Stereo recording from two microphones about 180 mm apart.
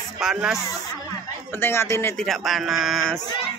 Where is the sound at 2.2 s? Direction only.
Centre (ahead or behind).